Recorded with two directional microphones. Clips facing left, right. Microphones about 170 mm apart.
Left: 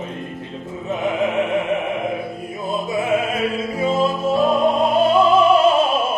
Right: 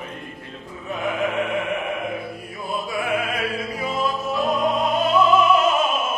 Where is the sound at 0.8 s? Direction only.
20° left (ahead or behind).